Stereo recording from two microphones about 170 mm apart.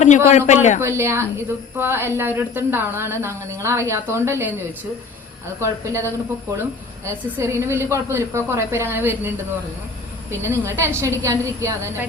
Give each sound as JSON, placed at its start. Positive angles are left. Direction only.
{"t": 0.3, "sound": "a man's voice", "side_deg": 40}
{"t": 0.8, "sound": "a woman's voice", "side_deg": -15}
{"t": 5.5, "sound": "a woman's voice", "side_deg": -15}
{"t": 10.4, "sound": "a woman's voice", "side_deg": -15}